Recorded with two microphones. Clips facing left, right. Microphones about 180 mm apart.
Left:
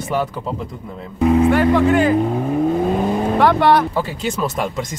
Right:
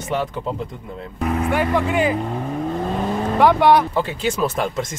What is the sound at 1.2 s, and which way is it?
Speech, 15° left (ahead or behind).